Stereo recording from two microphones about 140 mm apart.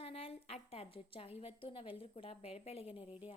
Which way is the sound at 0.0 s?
45° left (ahead or behind).